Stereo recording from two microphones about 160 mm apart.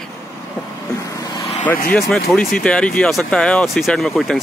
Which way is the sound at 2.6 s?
5° left (ahead or behind).